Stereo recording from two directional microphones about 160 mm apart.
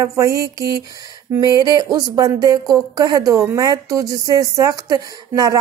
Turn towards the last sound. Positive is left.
turn(degrees=-20)  # may be behind; listen again after turning